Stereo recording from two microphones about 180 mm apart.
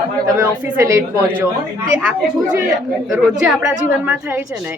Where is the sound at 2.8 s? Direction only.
Centre (ahead or behind).